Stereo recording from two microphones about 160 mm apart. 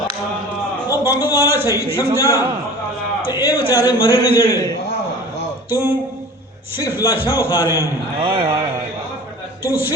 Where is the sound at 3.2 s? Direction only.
25° left (ahead or behind).